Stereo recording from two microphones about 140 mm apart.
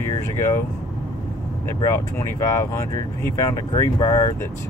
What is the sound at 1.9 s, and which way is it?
Speech, 20° left (ahead or behind).